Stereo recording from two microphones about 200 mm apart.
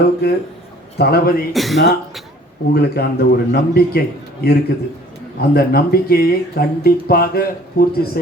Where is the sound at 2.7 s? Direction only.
50° left (ahead or behind).